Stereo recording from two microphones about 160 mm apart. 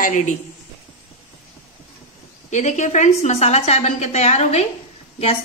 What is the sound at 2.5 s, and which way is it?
A woman's voice, 50° left (ahead or behind).